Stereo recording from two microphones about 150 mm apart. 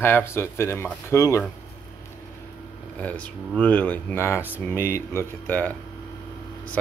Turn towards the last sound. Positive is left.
turn(degrees=10)  # may be behind; listen again after turning